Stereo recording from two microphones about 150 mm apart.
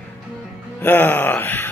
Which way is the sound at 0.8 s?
10° left (ahead or behind).